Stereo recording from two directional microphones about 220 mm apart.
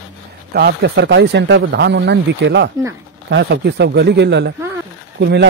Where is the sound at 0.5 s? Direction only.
50° right (ahead or behind).